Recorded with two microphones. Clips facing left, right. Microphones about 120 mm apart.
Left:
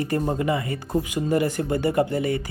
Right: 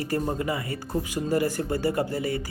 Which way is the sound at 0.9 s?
20° left (ahead or behind).